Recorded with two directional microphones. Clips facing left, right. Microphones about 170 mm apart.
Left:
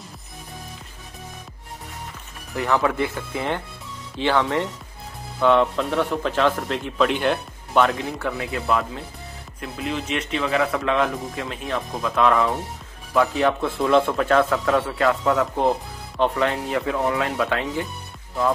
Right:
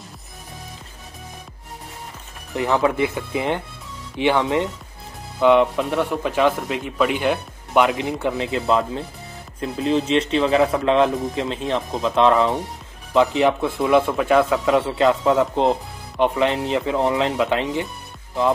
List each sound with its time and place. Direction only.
2.5 s a man's voice: 20° right (ahead or behind)